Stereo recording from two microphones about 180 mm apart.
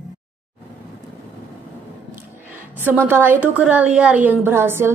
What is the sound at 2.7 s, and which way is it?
A woman's voice, 10° right (ahead or behind).